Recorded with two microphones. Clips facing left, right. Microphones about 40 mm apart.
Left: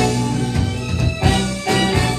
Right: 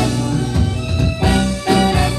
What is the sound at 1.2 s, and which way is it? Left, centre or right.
Music, centre.